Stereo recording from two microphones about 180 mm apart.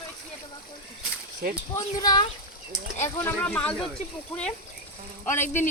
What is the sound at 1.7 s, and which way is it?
Speech, 20° left (ahead or behind).